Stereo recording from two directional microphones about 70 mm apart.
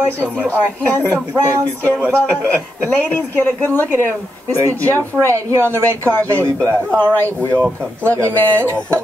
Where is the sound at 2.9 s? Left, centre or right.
Left.